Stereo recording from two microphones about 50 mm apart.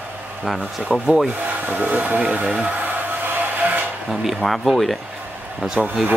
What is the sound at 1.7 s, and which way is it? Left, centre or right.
Speech, right.